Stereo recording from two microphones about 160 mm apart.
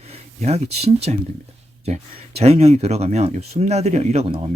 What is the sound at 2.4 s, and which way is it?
Speech, 40° right (ahead or behind).